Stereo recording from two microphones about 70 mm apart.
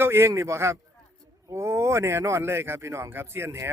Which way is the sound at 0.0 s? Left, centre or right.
Right.